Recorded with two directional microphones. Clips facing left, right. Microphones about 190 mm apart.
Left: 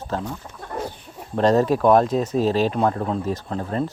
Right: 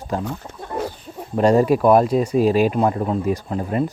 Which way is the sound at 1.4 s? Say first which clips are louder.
Right 2 dB; 10° right (ahead or behind).